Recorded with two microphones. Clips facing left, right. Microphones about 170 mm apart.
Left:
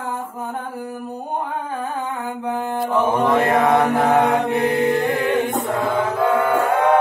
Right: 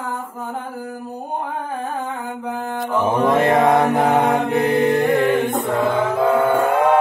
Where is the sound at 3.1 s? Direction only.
25° right (ahead or behind).